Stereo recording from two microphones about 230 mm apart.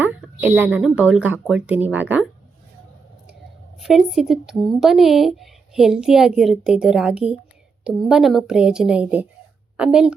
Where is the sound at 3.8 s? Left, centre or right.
Centre.